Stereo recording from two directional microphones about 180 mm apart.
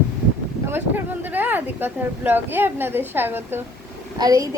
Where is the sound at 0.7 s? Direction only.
10° right (ahead or behind).